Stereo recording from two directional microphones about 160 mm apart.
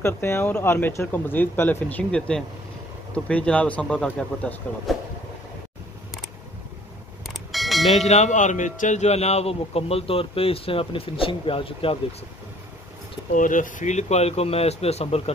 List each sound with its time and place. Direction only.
0.0 s speech: 15° left (ahead or behind)
7.2 s a sound: centre (ahead or behind)
7.9 s a man's voice: 45° left (ahead or behind)
13.3 s a man's voice: 55° left (ahead or behind); by 15.3 s 40° left (ahead or behind)